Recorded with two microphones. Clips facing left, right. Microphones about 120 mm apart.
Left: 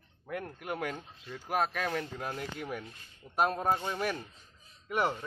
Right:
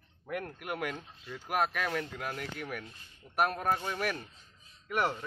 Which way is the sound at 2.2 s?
25° left (ahead or behind).